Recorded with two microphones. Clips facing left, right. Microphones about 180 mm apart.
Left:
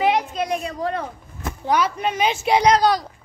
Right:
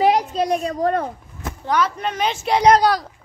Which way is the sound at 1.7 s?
10° left (ahead or behind).